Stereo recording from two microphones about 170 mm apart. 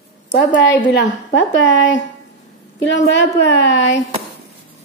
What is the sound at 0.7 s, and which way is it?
Speech, 90° left.